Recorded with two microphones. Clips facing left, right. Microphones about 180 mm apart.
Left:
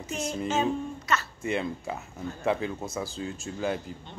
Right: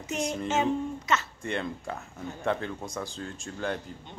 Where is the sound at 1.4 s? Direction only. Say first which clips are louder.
Left 3 dB; 5° left (ahead or behind).